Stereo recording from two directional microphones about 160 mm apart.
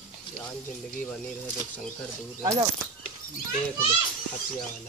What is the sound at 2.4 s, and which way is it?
Speech, 25° right (ahead or behind).